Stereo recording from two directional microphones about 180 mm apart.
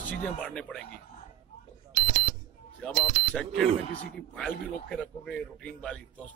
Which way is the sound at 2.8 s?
5° left (ahead or behind).